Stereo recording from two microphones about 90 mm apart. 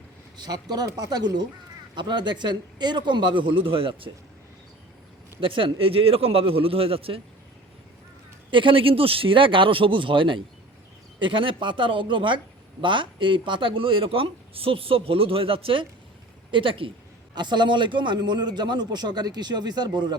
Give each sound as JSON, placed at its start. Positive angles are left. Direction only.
{"t": 0.3, "sound": "a man's voice", "side_deg": -50}
{"t": 5.4, "sound": "a man's voice", "side_deg": -75}
{"t": 8.4, "sound": "speech", "side_deg": -70}
{"t": 16.5, "sound": "speech", "side_deg": -70}
{"t": 17.3, "sound": "a man's voice", "side_deg": -55}